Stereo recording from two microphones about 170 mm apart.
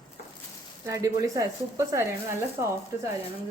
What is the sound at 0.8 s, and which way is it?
Speech, 15° right (ahead or behind).